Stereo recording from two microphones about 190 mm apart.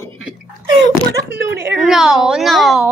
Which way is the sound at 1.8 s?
Centre (ahead or behind).